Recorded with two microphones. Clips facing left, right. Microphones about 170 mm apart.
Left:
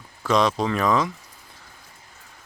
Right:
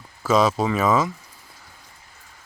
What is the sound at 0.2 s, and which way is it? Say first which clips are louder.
Speech: right 2 dB; 5° right (ahead or behind).